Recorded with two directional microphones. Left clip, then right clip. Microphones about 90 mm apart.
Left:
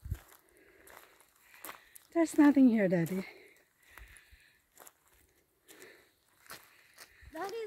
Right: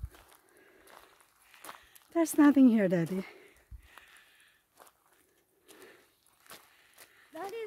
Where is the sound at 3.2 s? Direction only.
70° right (ahead or behind).